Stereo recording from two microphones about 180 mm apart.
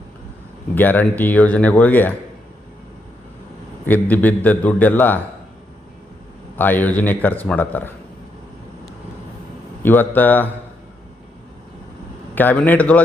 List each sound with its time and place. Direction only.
0.8 s speech: 10° left (ahead or behind)
3.8 s speech: 10° left (ahead or behind)
6.6 s speech: 10° left (ahead or behind)
9.8 s speech: 10° left (ahead or behind)
12.3 s speech: 10° left (ahead or behind)